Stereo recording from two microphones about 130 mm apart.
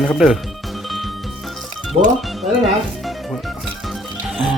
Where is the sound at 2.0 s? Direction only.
50° right (ahead or behind).